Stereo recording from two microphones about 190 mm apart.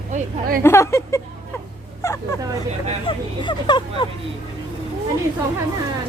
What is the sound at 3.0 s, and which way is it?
Speech, 25° left (ahead or behind).